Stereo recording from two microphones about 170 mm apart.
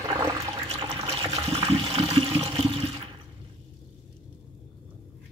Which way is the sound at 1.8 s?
25° right (ahead or behind).